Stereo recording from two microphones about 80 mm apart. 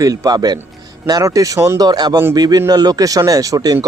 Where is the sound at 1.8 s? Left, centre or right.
Right.